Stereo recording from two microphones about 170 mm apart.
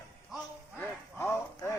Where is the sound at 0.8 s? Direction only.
15° left (ahead or behind).